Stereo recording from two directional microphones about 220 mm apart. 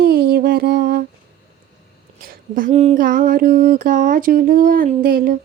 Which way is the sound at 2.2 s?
40° right (ahead or behind).